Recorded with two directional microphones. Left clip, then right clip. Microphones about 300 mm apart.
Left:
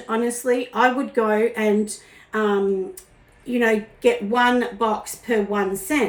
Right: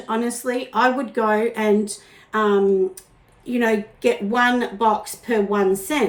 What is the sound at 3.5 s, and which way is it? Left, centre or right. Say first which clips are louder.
A woman's voice: left 1 dB; centre.